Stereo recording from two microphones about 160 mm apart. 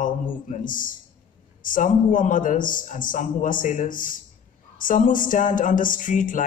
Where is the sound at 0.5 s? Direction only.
55° left (ahead or behind).